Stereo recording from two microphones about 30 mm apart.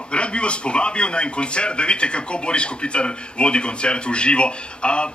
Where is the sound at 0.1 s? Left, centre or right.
Left.